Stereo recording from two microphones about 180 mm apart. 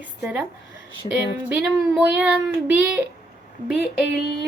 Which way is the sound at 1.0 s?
30° left (ahead or behind).